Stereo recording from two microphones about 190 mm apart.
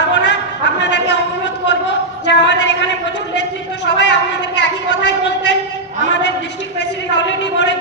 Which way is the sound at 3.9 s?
65° left (ahead or behind).